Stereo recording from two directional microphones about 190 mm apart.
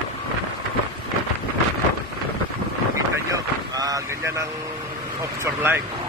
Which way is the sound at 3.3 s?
20° right (ahead or behind).